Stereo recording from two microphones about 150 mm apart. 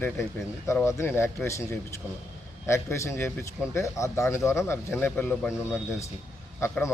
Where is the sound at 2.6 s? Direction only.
20° left (ahead or behind).